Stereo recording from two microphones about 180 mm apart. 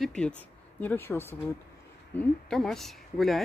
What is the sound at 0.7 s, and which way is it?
Speech, 10° left (ahead or behind).